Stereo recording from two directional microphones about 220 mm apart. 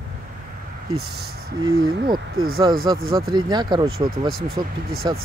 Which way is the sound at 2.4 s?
70° right (ahead or behind).